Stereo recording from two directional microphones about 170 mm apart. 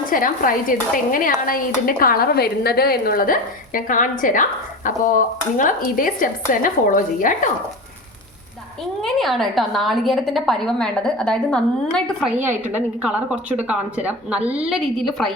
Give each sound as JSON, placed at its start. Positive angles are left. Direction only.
{"t": 0.1, "sound": "speech", "side_deg": 55}
{"t": 9.0, "sound": "a woman's voice", "side_deg": 0}
{"t": 12.3, "sound": "a woman's voice", "side_deg": -10}